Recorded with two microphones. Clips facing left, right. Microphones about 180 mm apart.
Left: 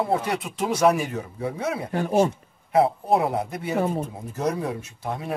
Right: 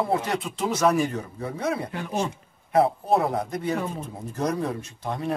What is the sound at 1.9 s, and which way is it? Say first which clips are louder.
Speech: left 7 dB; 45° left (ahead or behind).